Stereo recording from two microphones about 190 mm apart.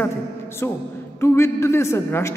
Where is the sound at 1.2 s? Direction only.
15° left (ahead or behind).